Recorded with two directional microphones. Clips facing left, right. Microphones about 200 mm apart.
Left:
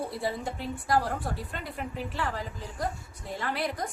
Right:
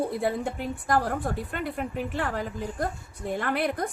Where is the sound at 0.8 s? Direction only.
50° right (ahead or behind).